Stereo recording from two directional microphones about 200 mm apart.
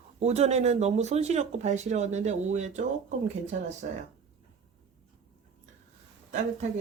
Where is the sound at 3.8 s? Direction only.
45° right (ahead or behind).